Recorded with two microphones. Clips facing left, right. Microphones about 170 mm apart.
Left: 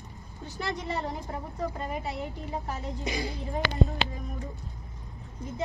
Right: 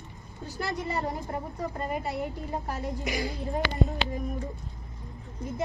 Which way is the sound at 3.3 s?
Centre (ahead or behind).